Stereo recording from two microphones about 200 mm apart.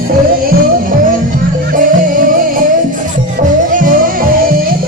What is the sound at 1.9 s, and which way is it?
Music, 45° right (ahead or behind).